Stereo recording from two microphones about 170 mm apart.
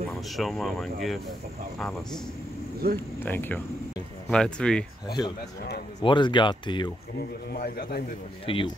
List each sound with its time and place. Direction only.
0.4 s speech: centre (ahead or behind)
2.8 s speech: 65° right (ahead or behind)
3.3 s speech: 10° left (ahead or behind)
5.9 s speech: 25° left (ahead or behind)
7.2 s a man's voice: 65° left (ahead or behind)
8.5 s a man's voice: 30° left (ahead or behind)